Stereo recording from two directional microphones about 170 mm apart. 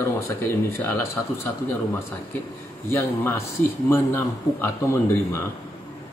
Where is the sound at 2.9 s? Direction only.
15° left (ahead or behind).